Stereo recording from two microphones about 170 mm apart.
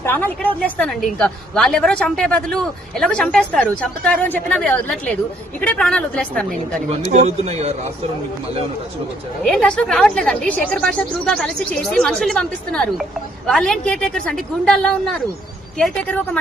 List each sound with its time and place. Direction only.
0.0 s a woman's voice: 10° left (ahead or behind)
7.0 s a man's voice: 40° right (ahead or behind)
9.4 s a woman's voice: 5° left (ahead or behind)